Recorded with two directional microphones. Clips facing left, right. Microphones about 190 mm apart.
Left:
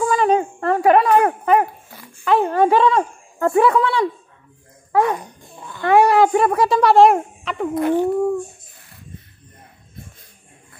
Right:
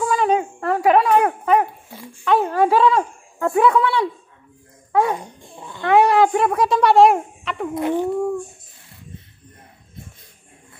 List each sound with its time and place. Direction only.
0.0 s speech: centre (ahead or behind)
5.1 s speech: 25° right (ahead or behind)
5.9 s speech: 5° left (ahead or behind)